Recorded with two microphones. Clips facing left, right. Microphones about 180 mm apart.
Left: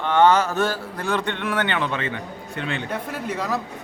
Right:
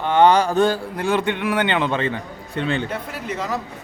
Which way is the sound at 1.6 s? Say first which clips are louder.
Right 4 dB; 25° right (ahead or behind).